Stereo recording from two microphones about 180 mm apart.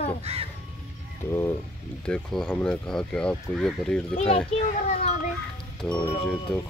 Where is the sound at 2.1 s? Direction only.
5° left (ahead or behind).